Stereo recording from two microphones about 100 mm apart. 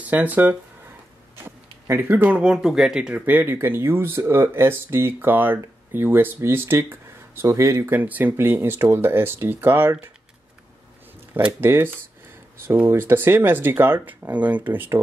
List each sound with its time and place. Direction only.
0.0 s speech: 15° right (ahead or behind)
7.9 s speech: 15° right (ahead or behind)
11.6 s speech: 25° right (ahead or behind)
12.9 s speech: 25° right (ahead or behind)